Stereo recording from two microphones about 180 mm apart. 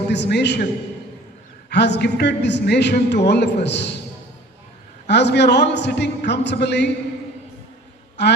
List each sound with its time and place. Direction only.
0.1 s a man's voice: 70° left (ahead or behind)
1.7 s a man's voice: 70° left (ahead or behind)
5.0 s a man's voice: 70° left (ahead or behind)
8.2 s a man's voice: 70° left (ahead or behind)